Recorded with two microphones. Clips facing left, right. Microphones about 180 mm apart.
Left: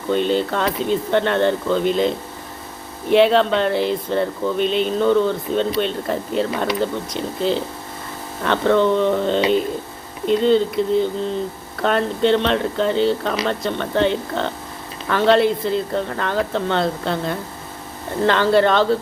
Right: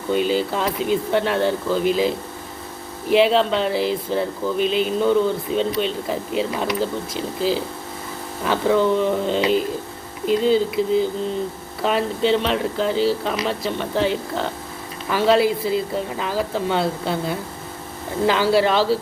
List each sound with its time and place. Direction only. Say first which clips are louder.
0.1 s speech: left 1 dB; 5° right (ahead or behind)